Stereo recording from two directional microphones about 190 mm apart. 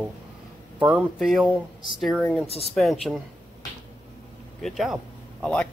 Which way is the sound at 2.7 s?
Centre (ahead or behind).